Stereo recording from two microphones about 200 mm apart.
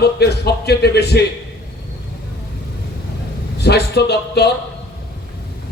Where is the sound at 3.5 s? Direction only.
55° left (ahead or behind).